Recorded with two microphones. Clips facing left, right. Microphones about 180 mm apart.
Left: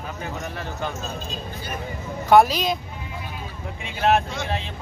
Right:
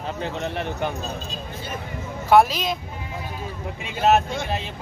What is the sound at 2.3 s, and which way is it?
Speech, centre (ahead or behind).